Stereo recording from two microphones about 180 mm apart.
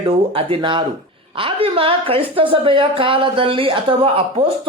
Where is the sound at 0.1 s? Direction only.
30° right (ahead or behind).